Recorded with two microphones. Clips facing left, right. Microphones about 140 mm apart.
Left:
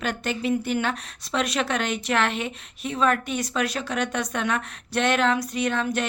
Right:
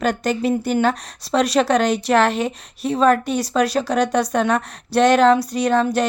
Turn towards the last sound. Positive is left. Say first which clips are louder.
# right 7 dB
turn(degrees=-35)  # may be behind; listen again after turning